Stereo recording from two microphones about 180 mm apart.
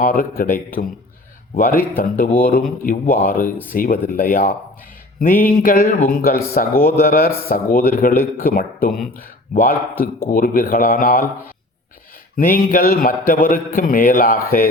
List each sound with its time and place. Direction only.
0.0 s a man's voice: 55° left (ahead or behind)
12.4 s a man's voice: 50° left (ahead or behind)